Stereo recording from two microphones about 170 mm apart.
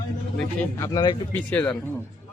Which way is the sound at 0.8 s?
20° left (ahead or behind).